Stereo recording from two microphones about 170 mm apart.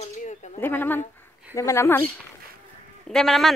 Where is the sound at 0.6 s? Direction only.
10° left (ahead or behind).